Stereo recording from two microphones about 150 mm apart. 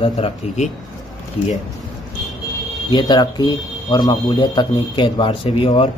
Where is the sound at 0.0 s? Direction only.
40° left (ahead or behind).